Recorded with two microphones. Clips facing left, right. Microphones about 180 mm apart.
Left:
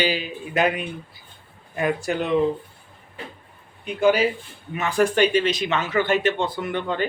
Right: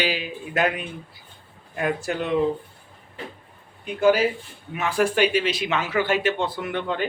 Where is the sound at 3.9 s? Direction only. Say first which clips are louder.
Even; centre (ahead or behind).